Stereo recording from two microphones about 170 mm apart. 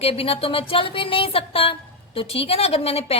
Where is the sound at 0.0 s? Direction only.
35° left (ahead or behind).